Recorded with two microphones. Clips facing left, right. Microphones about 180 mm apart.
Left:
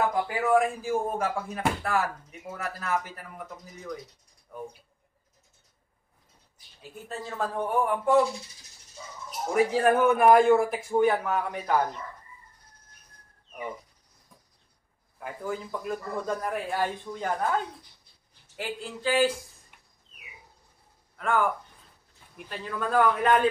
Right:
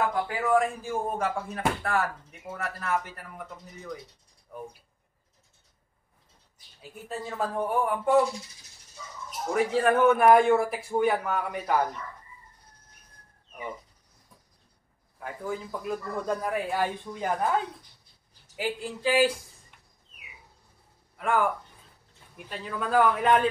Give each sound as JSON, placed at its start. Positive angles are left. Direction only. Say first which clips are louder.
{"t": 0.4, "sound": "a man's voice", "louder": "left 1 dB", "side_deg": 5}
{"t": 7.1, "sound": "a man's voice", "louder": "right 1 dB", "side_deg": -5}
{"t": 9.5, "sound": "a man's voice", "louder": "left 1 dB", "side_deg": 5}
{"t": 15.1, "sound": "a man's voice", "louder": "even", "side_deg": 0}
{"t": 21.2, "sound": "speech", "louder": "even", "side_deg": -10}
{"t": 22.5, "sound": "a man's voice", "louder": "right 1 dB", "side_deg": -5}